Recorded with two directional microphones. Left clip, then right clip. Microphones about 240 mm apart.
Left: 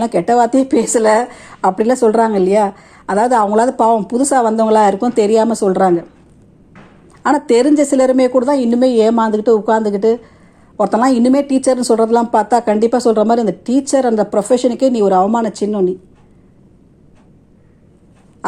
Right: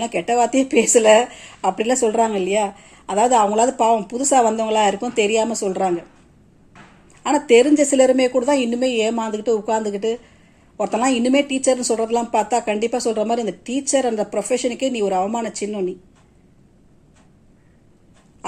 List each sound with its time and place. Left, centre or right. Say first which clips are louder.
0.0 s a woman's voice: left 6 dB; left
7.2 s speech: left 2 dB; left